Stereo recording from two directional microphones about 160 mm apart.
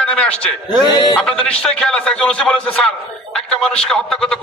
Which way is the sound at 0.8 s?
25° left (ahead or behind).